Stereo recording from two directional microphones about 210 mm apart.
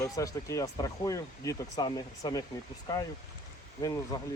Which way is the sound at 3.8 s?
15° left (ahead or behind).